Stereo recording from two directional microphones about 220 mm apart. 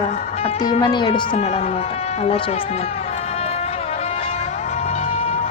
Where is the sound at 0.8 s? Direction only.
20° left (ahead or behind).